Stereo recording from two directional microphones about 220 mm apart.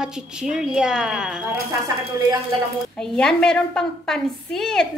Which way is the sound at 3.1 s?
5° left (ahead or behind).